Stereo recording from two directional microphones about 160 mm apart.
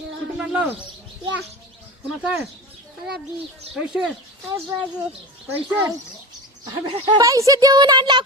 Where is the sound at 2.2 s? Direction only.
5° right (ahead or behind).